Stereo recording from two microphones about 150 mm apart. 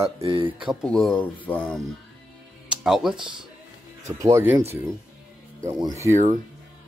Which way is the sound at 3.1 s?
30° right (ahead or behind).